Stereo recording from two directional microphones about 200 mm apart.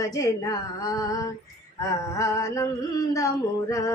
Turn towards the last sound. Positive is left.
turn(degrees=15)  # may be behind; listen again after turning